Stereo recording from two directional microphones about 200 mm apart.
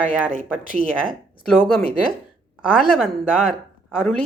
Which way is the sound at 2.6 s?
5° right (ahead or behind).